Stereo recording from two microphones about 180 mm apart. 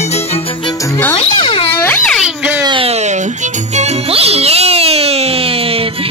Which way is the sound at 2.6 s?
30° right (ahead or behind).